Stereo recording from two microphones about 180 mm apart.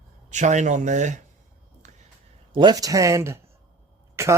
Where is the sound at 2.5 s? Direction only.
25° right (ahead or behind).